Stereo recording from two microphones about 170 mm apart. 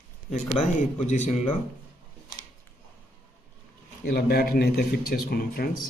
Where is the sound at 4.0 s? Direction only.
65° left (ahead or behind).